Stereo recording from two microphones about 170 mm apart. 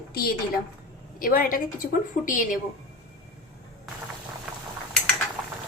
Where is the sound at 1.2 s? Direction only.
55° left (ahead or behind).